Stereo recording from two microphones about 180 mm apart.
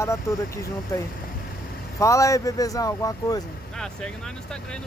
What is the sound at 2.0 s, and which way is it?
Speech, 15° left (ahead or behind).